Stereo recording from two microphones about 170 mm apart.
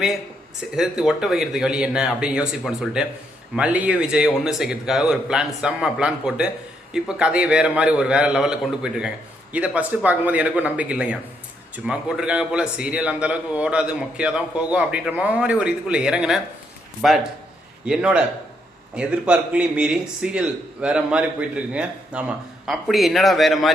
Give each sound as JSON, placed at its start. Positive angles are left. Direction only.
{"t": 0.8, "sound": "a man's voice", "side_deg": -5}